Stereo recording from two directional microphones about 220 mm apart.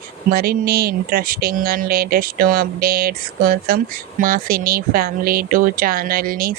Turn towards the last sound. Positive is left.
turn(degrees=-40)  # may be behind; listen again after turning